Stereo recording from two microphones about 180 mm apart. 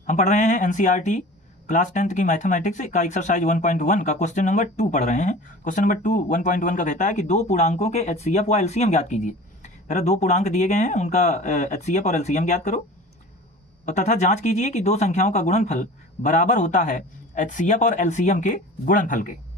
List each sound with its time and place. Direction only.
0.1 s speech: 40° left (ahead or behind)
13.8 s speech: 40° left (ahead or behind)